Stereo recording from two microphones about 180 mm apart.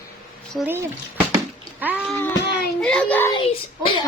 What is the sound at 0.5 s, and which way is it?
Child singing, 10° right (ahead or behind).